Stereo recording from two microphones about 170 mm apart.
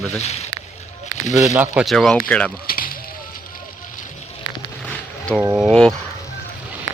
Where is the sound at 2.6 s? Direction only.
60° left (ahead or behind).